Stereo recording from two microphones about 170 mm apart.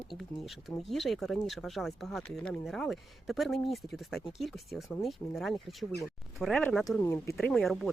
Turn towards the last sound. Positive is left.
turn(degrees=0)  # may be behind; listen again after turning